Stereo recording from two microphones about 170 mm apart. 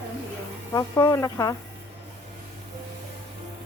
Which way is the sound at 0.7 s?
15° left (ahead or behind).